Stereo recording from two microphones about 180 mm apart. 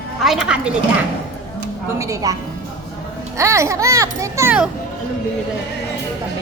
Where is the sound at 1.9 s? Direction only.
20° right (ahead or behind).